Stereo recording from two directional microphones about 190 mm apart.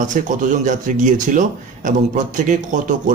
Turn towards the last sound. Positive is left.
turn(degrees=-40)  # may be behind; listen again after turning